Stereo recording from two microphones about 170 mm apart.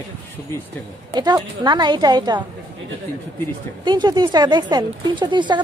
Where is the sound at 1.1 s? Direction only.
25° right (ahead or behind).